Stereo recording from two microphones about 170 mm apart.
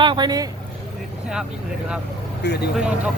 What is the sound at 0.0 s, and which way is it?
Speech, 25° right (ahead or behind).